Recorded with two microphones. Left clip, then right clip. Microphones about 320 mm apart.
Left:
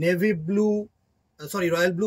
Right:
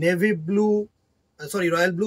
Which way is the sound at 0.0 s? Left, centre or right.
Centre.